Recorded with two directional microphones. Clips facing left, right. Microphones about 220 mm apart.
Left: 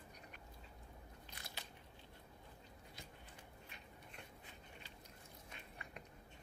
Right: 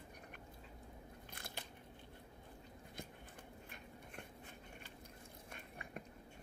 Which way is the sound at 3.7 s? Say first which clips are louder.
Right 4 dB; 50° right (ahead or behind).